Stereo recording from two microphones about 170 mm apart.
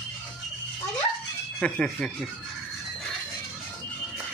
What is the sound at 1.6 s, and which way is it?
Speech, 5° left (ahead or behind).